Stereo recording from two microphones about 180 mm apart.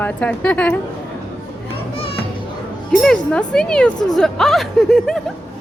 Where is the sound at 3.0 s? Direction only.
5° left (ahead or behind).